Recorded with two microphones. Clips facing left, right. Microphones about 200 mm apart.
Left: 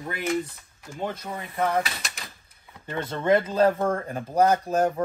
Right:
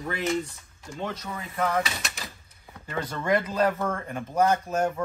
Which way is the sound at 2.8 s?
25° left (ahead or behind).